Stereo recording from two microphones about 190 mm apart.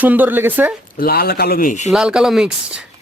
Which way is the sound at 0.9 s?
50° left (ahead or behind).